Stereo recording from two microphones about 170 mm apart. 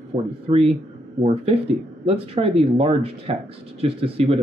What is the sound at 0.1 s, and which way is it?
Speech, 35° right (ahead or behind).